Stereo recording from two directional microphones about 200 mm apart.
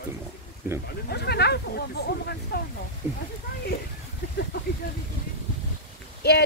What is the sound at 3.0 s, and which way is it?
Speech, 15° right (ahead or behind).